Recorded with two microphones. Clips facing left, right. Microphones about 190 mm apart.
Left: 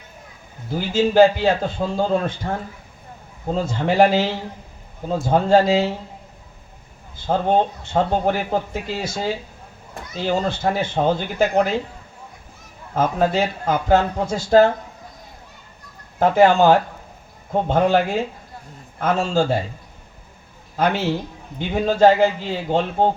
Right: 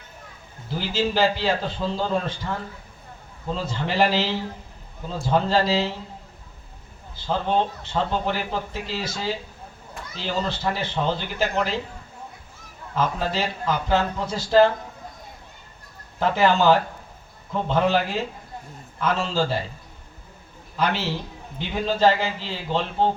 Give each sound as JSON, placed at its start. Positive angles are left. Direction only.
{"t": 0.8, "sound": "a man's voice", "side_deg": 50}
{"t": 7.2, "sound": "a man's voice", "side_deg": 50}
{"t": 12.9, "sound": "a man's voice", "side_deg": 50}
{"t": 16.2, "sound": "a man's voice", "side_deg": 50}
{"t": 20.7, "sound": "a man's voice", "side_deg": 50}